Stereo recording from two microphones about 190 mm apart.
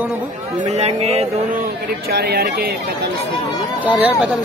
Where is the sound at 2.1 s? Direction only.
55° right (ahead or behind).